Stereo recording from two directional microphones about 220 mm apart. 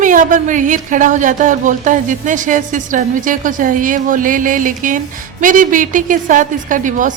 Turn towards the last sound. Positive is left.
turn(degrees=-35)  # may be behind; listen again after turning